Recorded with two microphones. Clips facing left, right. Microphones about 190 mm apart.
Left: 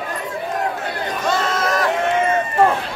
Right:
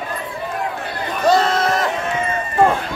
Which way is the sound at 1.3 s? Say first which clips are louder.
Right 7 dB; 35° right (ahead or behind).